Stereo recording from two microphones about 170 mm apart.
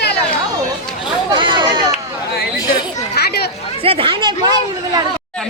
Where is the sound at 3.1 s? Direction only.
70° left (ahead or behind).